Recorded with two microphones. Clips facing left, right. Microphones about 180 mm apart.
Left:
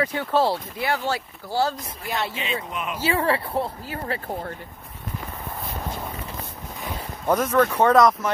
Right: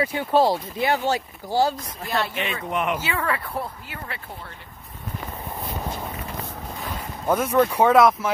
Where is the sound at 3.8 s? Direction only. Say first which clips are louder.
Left 7 dB; 40° left (ahead or behind).